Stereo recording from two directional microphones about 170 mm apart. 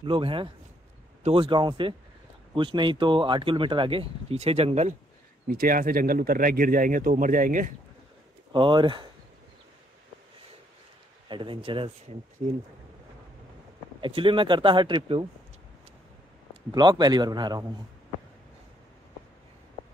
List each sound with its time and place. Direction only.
0.0 s speech: 30° right (ahead or behind)
5.5 s speech: 60° right (ahead or behind)
8.5 s speech: 30° right (ahead or behind)
11.2 s speech: 30° right (ahead or behind)
14.0 s speech: 30° right (ahead or behind)
16.7 s speech: 25° right (ahead or behind)